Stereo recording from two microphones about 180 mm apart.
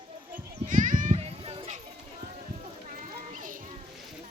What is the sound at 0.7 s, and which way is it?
Children playing, 45° right (ahead or behind).